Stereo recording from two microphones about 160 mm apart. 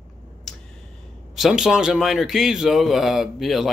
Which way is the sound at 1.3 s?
Centre (ahead or behind).